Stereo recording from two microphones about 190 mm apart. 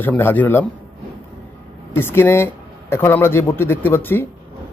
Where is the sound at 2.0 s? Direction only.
10° left (ahead or behind).